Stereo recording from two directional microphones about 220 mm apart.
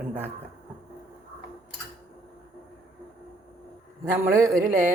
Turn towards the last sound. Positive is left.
turn(degrees=-15)  # may be behind; listen again after turning